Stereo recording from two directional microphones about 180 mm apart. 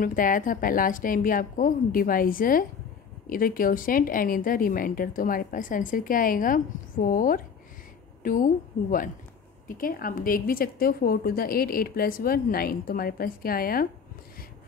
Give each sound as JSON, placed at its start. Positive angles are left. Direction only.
{"t": 0.0, "sound": "a woman's voice", "side_deg": 50}
{"t": 9.8, "sound": "a woman's voice", "side_deg": 50}